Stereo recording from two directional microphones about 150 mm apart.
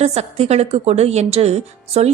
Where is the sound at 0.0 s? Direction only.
45° right (ahead or behind).